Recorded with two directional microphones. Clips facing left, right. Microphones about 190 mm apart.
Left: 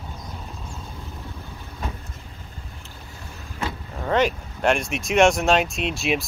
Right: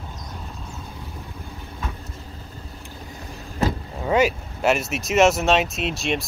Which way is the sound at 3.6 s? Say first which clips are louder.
Right 7 dB; 40° right (ahead or behind).